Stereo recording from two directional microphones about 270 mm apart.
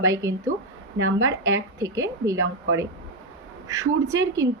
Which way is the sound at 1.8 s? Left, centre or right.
Centre.